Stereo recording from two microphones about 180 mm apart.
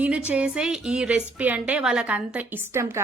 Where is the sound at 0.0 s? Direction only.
5° right (ahead or behind).